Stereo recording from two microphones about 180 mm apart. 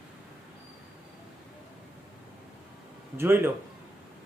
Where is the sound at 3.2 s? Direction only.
10° right (ahead or behind).